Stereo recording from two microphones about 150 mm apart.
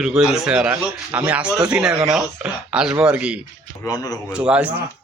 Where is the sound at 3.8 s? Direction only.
25° left (ahead or behind).